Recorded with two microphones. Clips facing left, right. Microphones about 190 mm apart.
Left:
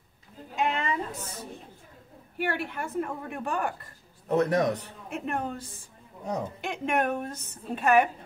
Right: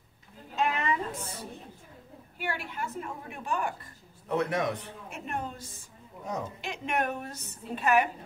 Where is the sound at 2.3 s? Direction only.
60° left (ahead or behind).